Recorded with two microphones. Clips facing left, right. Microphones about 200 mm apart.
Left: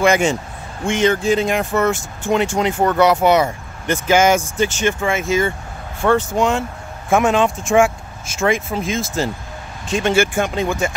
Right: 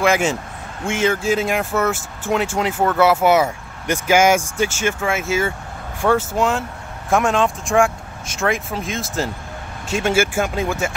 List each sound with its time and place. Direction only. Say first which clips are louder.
0.0 s speech: left 2 dB; 5° right (ahead or behind)